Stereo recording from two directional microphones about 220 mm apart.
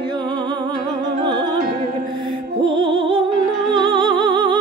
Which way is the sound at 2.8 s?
25° right (ahead or behind).